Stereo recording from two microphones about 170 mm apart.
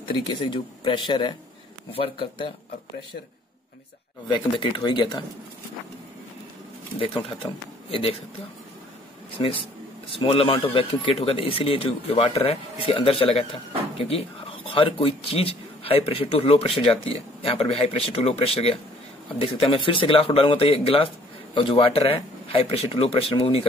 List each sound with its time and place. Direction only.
0.3 s speech: 30° left (ahead or behind)
4.3 s speech: 25° left (ahead or behind)
7.0 s speech: 30° left (ahead or behind)
10.0 s speech: 30° left (ahead or behind)
14.7 s speech: 30° left (ahead or behind)